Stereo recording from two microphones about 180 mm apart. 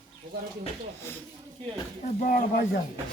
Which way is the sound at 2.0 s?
45° left (ahead or behind).